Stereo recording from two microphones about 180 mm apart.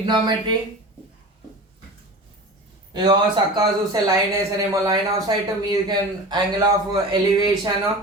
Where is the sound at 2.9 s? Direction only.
25° right (ahead or behind).